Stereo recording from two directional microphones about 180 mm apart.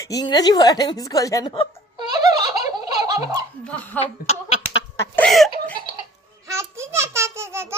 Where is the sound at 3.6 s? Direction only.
10° left (ahead or behind).